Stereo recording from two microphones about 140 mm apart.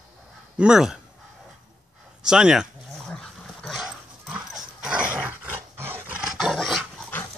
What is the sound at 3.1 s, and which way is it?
Dog, centre (ahead or behind).